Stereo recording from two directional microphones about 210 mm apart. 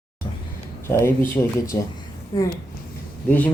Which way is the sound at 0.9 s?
10° left (ahead or behind).